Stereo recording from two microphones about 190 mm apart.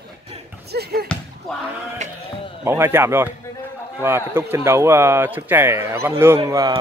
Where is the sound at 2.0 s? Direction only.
40° right (ahead or behind).